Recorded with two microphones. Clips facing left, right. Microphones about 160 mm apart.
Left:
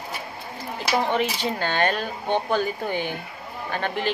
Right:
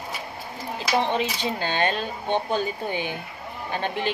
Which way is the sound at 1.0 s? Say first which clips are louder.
Left 1 dB; 20° right (ahead or behind).